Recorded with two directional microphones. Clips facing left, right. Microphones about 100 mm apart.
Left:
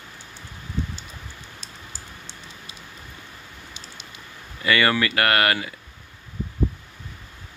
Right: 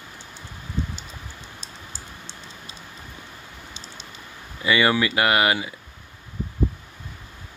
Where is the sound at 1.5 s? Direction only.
20° right (ahead or behind).